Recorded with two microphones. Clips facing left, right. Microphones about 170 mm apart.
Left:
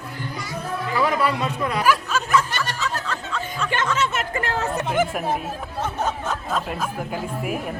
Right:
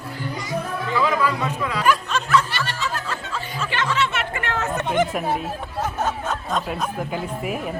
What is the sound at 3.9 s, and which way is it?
Chatter, 40° left (ahead or behind).